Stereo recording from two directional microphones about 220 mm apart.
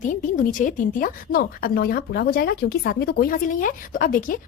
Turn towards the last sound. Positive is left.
turn(degrees=40)  # may be behind; listen again after turning